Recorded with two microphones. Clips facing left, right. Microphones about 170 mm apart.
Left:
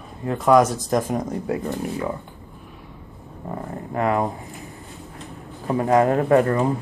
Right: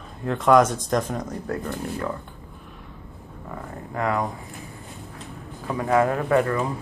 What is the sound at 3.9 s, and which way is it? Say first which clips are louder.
Speech: left 3 dB; 30° left (ahead or behind).